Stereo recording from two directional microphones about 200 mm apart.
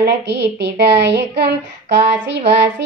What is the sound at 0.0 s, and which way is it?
Speech, 60° right (ahead or behind).